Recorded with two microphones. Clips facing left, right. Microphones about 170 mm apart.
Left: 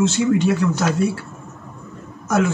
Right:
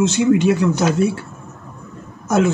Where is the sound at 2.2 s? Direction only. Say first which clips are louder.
Right 3 dB; 25° right (ahead or behind).